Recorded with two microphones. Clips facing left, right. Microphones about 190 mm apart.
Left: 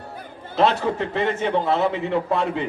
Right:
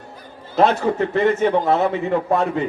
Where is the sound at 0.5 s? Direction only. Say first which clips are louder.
Right 3 dB; 45° right (ahead or behind).